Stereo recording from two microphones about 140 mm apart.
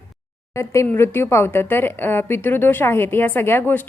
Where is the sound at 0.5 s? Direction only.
20° left (ahead or behind).